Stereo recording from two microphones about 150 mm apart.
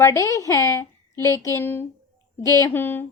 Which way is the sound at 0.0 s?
20° left (ahead or behind).